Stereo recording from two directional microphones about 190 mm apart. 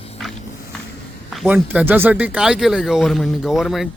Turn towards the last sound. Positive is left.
turn(degrees=0)  # may be behind; listen again after turning